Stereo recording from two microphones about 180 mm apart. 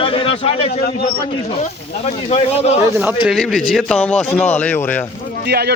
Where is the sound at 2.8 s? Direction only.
10° right (ahead or behind).